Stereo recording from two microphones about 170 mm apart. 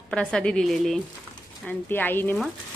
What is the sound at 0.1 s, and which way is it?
A woman's voice, 5° left (ahead or behind).